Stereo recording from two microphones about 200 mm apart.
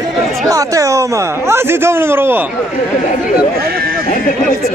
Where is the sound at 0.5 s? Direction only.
15° right (ahead or behind).